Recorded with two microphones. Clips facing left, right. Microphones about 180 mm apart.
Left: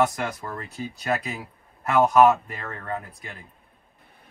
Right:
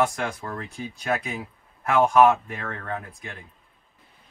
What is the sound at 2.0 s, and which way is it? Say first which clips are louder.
Speech: left 1 dB; 5° left (ahead or behind).